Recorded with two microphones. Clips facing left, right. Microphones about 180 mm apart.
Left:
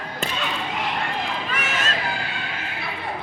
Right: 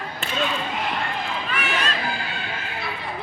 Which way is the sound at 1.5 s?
40° left (ahead or behind).